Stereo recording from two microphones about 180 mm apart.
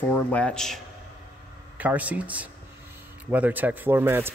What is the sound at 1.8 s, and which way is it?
Speech, 10° right (ahead or behind).